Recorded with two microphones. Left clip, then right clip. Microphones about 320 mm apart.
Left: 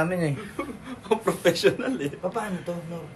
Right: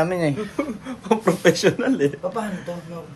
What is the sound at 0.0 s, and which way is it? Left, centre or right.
Speech, right.